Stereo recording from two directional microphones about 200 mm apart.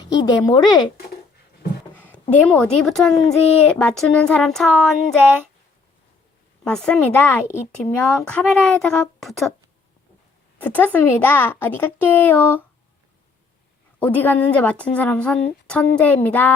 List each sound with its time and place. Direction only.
0.0 s speech: 20° left (ahead or behind)
2.5 s speech: centre (ahead or behind)
6.7 s a woman's voice: 5° left (ahead or behind)
10.6 s a woman's voice: 10° left (ahead or behind)
14.0 s a woman's voice: 10° left (ahead or behind)